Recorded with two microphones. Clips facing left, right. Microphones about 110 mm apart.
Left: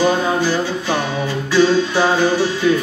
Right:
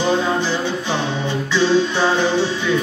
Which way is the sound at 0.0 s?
10° left (ahead or behind).